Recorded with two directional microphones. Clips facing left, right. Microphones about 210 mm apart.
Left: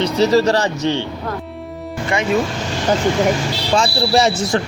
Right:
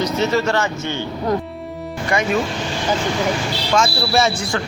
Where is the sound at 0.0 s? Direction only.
35° left (ahead or behind).